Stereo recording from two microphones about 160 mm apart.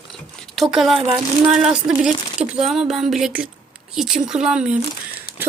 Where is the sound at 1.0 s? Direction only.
20° right (ahead or behind).